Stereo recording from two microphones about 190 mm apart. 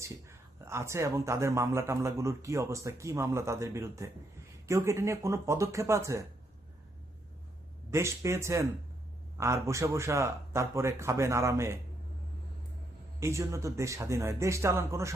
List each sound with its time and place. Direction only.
0.0 s a man's voice: 15° right (ahead or behind)
7.9 s a man's voice: 15° right (ahead or behind)
13.1 s a man's voice: 15° right (ahead or behind)